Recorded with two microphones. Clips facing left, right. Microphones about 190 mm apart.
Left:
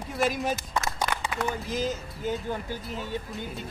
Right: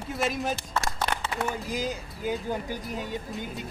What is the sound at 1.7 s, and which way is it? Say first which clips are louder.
Speech: left 1 dB; 10° right (ahead or behind).